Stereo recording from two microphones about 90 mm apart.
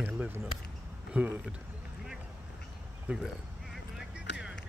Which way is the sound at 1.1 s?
15° right (ahead or behind).